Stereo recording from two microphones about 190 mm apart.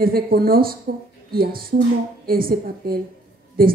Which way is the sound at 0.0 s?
50° right (ahead or behind).